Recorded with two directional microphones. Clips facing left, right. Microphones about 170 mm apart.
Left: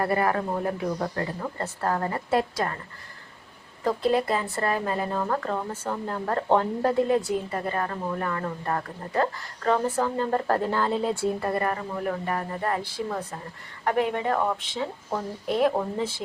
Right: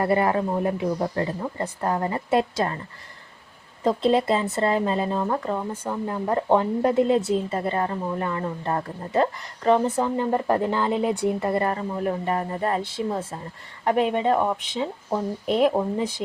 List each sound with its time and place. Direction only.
0.0 s speech: 20° right (ahead or behind)
3.8 s speech: 25° right (ahead or behind)